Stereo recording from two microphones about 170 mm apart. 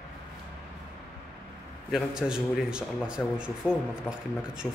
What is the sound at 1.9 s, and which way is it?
A man's voice, 5° right (ahead or behind).